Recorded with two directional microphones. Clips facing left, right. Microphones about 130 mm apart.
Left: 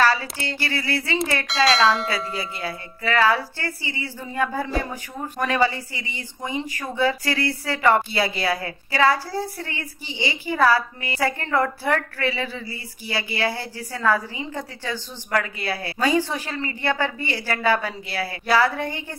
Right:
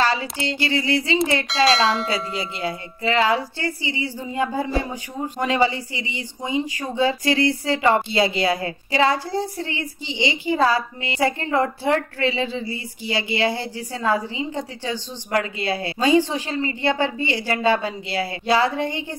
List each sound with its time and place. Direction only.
0.0 s speech: 20° right (ahead or behind)
1.5 s speech: centre (ahead or behind)
2.0 s speech: 20° right (ahead or behind)